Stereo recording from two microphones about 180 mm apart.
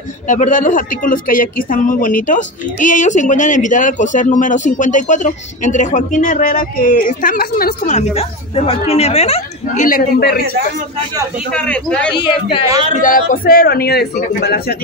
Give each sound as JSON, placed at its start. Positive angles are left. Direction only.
{"t": 0.3, "sound": "speech", "side_deg": 45}
{"t": 9.8, "sound": "a man's voice", "side_deg": 55}
{"t": 11.5, "sound": "speech", "side_deg": 5}
{"t": 12.9, "sound": "a man's voice", "side_deg": 50}